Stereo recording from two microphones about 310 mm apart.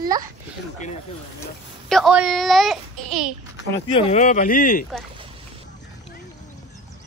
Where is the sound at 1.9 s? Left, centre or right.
Centre.